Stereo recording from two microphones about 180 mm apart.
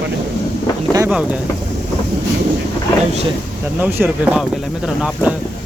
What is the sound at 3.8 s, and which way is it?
Speech, 10° right (ahead or behind).